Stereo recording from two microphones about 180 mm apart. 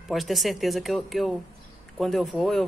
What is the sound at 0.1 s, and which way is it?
Speech, centre (ahead or behind).